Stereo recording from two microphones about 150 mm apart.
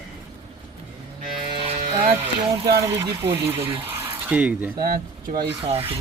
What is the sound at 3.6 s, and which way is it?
Speech, 35° right (ahead or behind).